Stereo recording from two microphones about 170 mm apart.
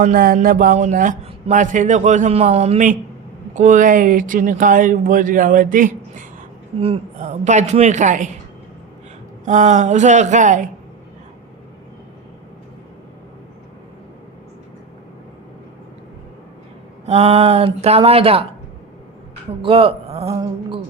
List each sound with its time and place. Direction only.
0.0 s a man's voice: 60° right (ahead or behind)
6.7 s a man's voice: 35° right (ahead or behind)
9.4 s a man's voice: 45° right (ahead or behind)
17.1 s speech: 35° right (ahead or behind)
19.6 s speech: 30° right (ahead or behind)